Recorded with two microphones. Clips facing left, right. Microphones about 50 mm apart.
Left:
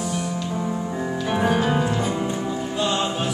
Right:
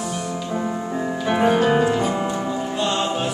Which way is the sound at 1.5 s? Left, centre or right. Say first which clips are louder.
Right 5 dB; right.